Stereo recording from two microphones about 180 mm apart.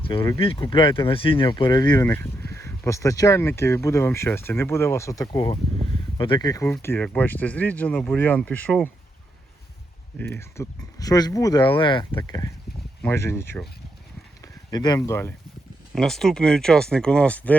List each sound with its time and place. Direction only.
0.0 s speech: 30° left (ahead or behind); by 8.9 s 10° left (ahead or behind)
10.2 s speech: 15° left (ahead or behind)
16.0 s speech: centre (ahead or behind)